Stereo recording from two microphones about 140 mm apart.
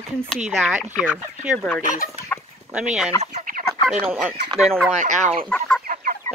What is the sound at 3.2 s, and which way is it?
Fowl, 65° right (ahead or behind).